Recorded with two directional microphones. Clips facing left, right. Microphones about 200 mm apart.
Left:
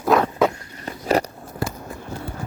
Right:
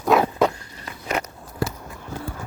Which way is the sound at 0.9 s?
35° left (ahead or behind).